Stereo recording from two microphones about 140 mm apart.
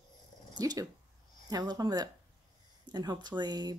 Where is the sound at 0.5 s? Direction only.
30° right (ahead or behind).